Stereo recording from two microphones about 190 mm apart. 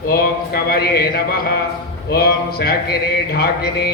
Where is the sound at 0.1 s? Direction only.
55° left (ahead or behind).